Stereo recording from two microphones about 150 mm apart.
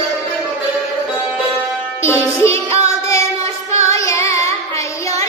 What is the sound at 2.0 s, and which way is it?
Music, 15° left (ahead or behind).